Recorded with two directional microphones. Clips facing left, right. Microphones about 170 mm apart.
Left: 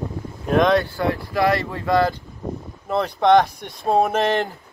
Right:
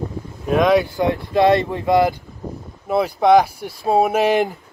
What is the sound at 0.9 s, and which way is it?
Speech, 20° right (ahead or behind).